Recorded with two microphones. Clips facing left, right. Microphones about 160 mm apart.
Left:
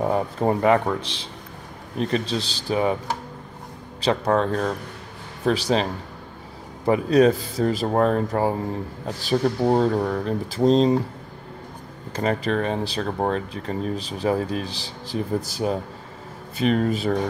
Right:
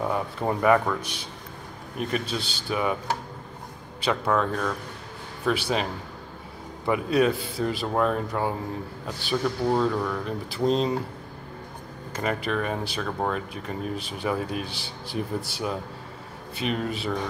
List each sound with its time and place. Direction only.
0.0 s speech: 35° left (ahead or behind)
2.1 s speech: 30° left (ahead or behind)
4.0 s speech: 35° left (ahead or behind)
6.9 s speech: 40° left (ahead or behind)
12.1 s speech: 30° left (ahead or behind)
16.5 s speech: 45° left (ahead or behind)